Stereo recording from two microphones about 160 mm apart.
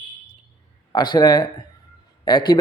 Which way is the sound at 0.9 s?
25° left (ahead or behind).